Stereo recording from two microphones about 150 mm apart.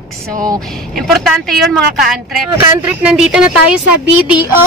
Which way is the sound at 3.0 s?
5° right (ahead or behind).